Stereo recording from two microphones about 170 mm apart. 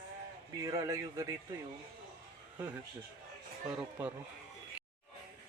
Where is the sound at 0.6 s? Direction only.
20° right (ahead or behind).